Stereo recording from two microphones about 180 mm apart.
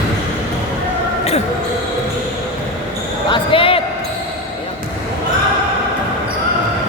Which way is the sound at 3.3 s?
30° left (ahead or behind).